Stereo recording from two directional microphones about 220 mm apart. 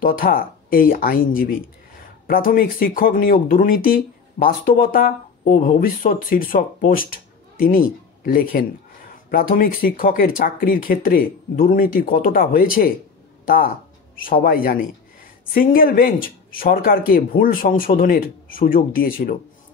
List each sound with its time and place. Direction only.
0.0 s speech: 40° left (ahead or behind)
14.1 s speech: 40° left (ahead or behind)